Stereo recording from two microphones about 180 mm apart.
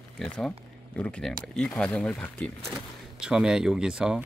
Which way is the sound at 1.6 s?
5° left (ahead or behind).